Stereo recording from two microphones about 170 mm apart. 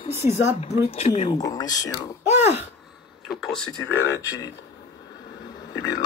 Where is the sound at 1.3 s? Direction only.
20° left (ahead or behind).